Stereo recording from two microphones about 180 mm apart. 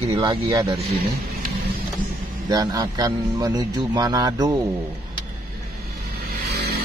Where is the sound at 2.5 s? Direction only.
20° right (ahead or behind).